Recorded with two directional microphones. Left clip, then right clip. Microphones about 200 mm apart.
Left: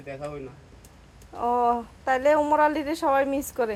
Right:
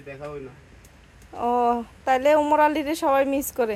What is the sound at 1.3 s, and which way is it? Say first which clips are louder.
Speech: right 1 dB; 35° right (ahead or behind).